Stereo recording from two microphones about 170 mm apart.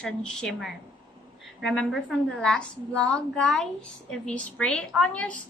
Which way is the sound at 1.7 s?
Centre (ahead or behind).